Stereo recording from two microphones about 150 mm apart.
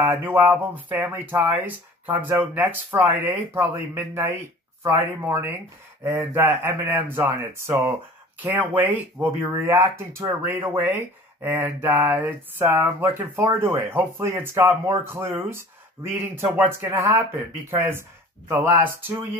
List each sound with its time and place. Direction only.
0.0 s speech: 15° right (ahead or behind)